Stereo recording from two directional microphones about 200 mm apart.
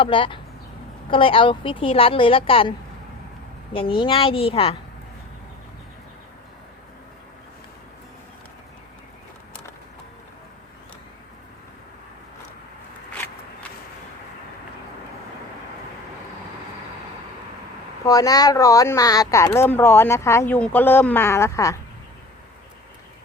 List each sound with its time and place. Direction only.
0.0 s a woman's voice: 25° left (ahead or behind)
13.1 s a sound: 10° left (ahead or behind)
18.0 s speech: 15° left (ahead or behind)